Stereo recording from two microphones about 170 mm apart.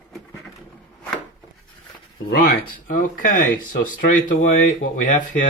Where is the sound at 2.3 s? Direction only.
60° left (ahead or behind).